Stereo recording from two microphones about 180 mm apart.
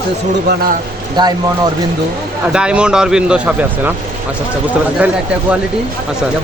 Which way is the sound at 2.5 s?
5° right (ahead or behind).